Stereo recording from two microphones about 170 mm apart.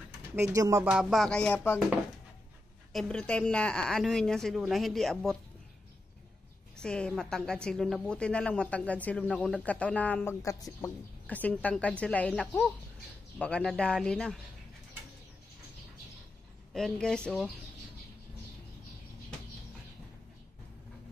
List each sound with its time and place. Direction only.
0.6 s music: 20° right (ahead or behind)
0.8 s a woman's voice: 5° right (ahead or behind)
2.9 s a woman's voice: 5° left (ahead or behind)
6.8 s a woman's voice: 5° left (ahead or behind)
16.7 s a woman's voice: 5° left (ahead or behind)